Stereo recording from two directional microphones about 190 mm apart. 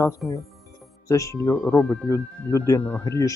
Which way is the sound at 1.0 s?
15° left (ahead or behind).